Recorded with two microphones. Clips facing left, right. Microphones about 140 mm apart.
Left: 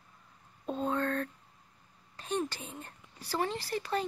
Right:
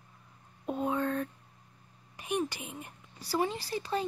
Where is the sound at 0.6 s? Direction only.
10° right (ahead or behind).